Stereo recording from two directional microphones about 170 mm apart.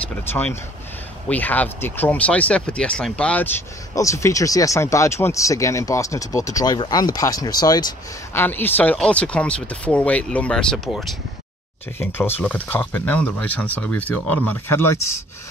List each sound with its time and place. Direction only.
0.2 s speech: 10° left (ahead or behind)
12.0 s speech: 10° left (ahead or behind)